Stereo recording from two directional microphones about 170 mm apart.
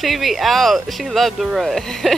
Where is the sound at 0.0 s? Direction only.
Centre (ahead or behind).